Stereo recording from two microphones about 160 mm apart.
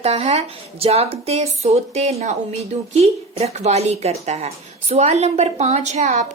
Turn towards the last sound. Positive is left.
turn(degrees=-45)  # may be behind; listen again after turning